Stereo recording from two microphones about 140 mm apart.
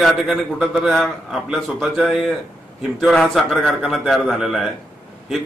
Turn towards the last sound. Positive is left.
turn(degrees=0)  # may be behind; listen again after turning